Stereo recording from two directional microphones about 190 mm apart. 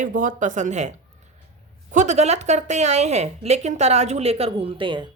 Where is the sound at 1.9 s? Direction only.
40° right (ahead or behind).